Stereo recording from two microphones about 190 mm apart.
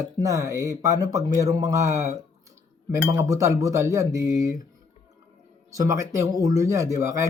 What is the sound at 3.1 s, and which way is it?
Speech, 15° right (ahead or behind).